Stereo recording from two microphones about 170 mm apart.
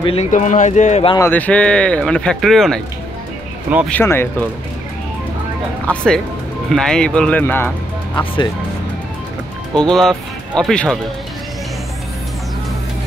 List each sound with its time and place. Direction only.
0.0 s speech: 35° left (ahead or behind)
0.3 s speech: 45° left (ahead or behind)
1.1 s speech: 15° left (ahead or behind)
3.9 s speech: 15° left (ahead or behind)
5.9 s speech: 5° left (ahead or behind)
9.8 s speech: 5° left (ahead or behind)